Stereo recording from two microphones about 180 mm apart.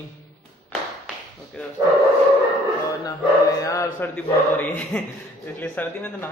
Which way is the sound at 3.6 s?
15° left (ahead or behind).